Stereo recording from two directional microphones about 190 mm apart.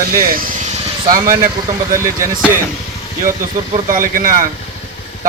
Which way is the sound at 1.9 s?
15° right (ahead or behind).